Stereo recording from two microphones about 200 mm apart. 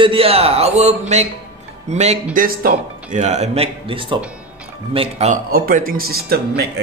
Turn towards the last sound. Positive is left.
turn(degrees=-50)  # may be behind; listen again after turning